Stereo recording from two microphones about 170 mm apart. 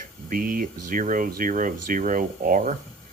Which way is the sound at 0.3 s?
55° right (ahead or behind).